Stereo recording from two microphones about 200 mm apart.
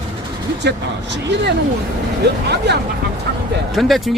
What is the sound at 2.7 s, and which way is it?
Speech, 60° right (ahead or behind).